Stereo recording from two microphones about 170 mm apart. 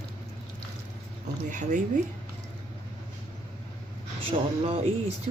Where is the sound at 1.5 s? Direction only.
50° right (ahead or behind).